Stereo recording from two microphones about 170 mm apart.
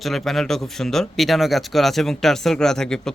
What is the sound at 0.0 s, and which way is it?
Speech, centre (ahead or behind).